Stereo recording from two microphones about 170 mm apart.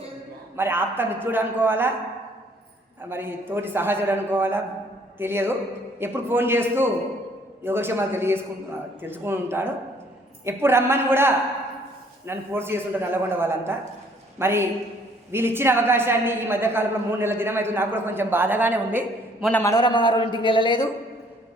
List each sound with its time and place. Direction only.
0.5 s a woman's voice: 15° right (ahead or behind)
3.1 s a woman's voice: 15° right (ahead or behind)
19.5 s a man's voice: 10° left (ahead or behind)
19.7 s a man's voice: 25° left (ahead or behind)